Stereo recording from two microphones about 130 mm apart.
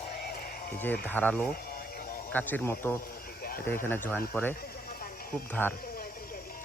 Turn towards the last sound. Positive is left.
turn(degrees=90)